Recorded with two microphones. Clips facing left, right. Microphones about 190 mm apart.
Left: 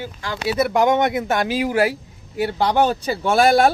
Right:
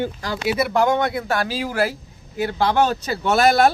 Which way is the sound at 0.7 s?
20° left (ahead or behind).